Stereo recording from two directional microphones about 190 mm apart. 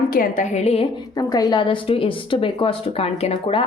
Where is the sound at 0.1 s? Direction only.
45° left (ahead or behind).